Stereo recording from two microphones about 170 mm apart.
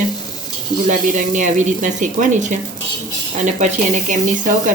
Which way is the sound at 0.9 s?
45° right (ahead or behind).